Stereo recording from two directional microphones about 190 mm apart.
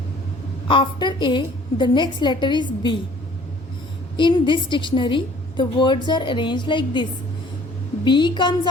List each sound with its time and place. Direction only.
0.7 s a woman's voice: 25° left (ahead or behind)
4.2 s a woman's voice: 25° left (ahead or behind)